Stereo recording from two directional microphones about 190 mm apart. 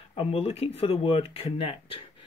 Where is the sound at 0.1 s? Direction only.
30° left (ahead or behind).